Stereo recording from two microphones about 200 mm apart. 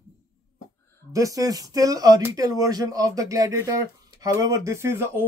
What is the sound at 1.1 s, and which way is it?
Speech, 15° right (ahead or behind).